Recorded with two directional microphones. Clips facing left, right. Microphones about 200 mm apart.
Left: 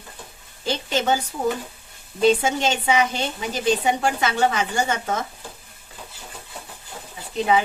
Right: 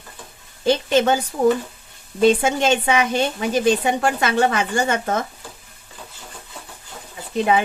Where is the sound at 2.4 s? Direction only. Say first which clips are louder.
Right 4 dB; 55° right (ahead or behind).